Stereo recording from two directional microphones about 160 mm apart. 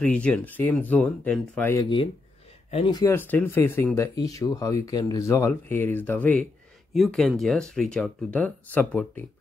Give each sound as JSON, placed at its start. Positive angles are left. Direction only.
{"t": 0.0, "sound": "speech", "side_deg": 5}
{"t": 2.9, "sound": "speech", "side_deg": 20}